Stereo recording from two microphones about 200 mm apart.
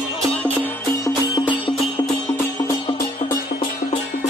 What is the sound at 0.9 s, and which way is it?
Music, 20° left (ahead or behind).